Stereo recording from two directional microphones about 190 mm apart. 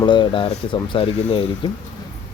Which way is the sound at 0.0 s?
25° left (ahead or behind).